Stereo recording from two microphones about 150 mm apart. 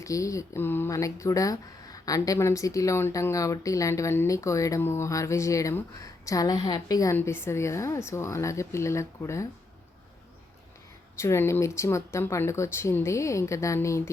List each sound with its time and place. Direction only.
0.0 s speech: 20° left (ahead or behind)
11.2 s speech: 20° left (ahead or behind)